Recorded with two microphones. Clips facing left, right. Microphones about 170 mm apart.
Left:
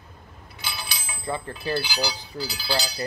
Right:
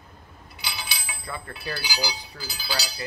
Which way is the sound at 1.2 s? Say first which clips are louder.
Left 7 dB; 30° left (ahead or behind).